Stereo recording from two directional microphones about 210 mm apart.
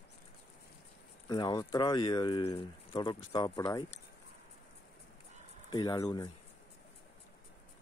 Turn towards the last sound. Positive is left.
turn(degrees=20)  # may be behind; listen again after turning